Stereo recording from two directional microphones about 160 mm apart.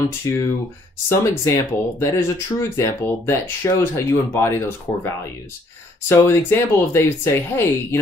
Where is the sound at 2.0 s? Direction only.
20° left (ahead or behind).